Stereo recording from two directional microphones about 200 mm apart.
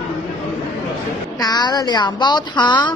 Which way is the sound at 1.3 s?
20° left (ahead or behind).